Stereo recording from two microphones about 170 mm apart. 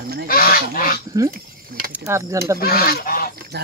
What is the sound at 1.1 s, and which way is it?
Speech, 25° right (ahead or behind).